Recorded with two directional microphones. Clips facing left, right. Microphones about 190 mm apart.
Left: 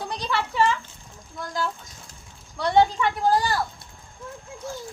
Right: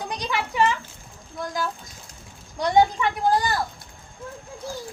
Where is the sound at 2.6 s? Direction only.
15° right (ahead or behind).